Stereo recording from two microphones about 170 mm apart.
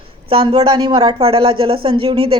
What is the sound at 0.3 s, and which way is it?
Speech, 30° right (ahead or behind).